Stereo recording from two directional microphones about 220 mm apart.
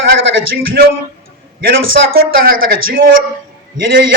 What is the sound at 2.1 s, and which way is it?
Speech, 40° right (ahead or behind).